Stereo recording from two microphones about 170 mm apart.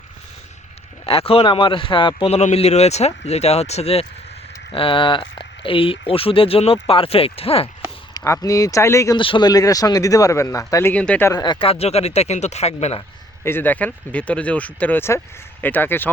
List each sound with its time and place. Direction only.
1.0 s a man's voice: 35° left (ahead or behind)
8.1 s speech: 20° left (ahead or behind); by 13.0 s 40° left (ahead or behind)
13.4 s speech: 10° left (ahead or behind)